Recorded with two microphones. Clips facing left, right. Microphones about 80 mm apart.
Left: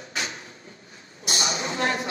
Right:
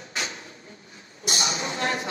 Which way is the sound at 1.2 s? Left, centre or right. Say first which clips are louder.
Even; left.